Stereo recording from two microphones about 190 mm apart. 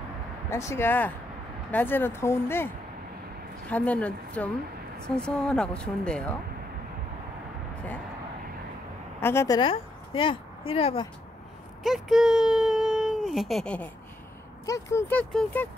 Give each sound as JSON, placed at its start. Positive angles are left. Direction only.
{"t": 0.5, "sound": "speech", "side_deg": 15}
{"t": 9.2, "sound": "speech", "side_deg": 15}
{"t": 9.6, "sound": "speech", "side_deg": 25}
{"t": 11.8, "sound": "speech", "side_deg": 0}
{"t": 14.7, "sound": "speech", "side_deg": 15}